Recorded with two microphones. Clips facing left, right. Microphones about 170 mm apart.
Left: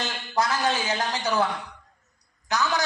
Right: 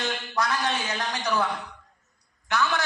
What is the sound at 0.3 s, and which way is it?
A man's voice, 25° left (ahead or behind).